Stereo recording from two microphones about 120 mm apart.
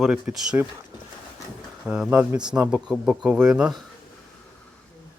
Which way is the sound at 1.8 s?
10° right (ahead or behind).